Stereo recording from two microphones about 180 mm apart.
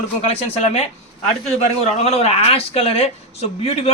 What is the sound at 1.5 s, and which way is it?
Speech, 35° left (ahead or behind).